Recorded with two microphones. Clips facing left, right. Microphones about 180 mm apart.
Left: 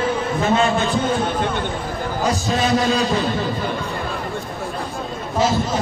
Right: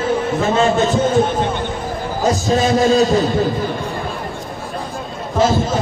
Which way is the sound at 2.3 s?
45° right (ahead or behind).